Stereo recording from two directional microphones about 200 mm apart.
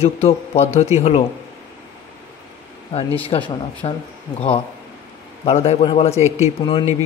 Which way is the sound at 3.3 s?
20° left (ahead or behind).